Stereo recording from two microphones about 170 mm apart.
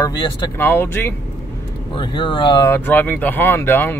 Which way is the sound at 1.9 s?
30° left (ahead or behind).